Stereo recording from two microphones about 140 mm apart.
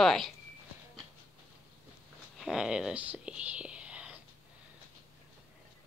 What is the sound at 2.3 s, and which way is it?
Whispering, 5° right (ahead or behind).